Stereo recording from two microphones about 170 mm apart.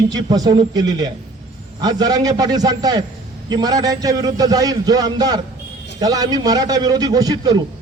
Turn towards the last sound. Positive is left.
turn(degrees=-20)  # may be behind; listen again after turning